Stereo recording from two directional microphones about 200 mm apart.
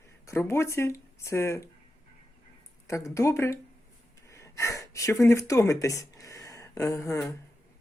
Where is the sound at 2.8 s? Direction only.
15° left (ahead or behind).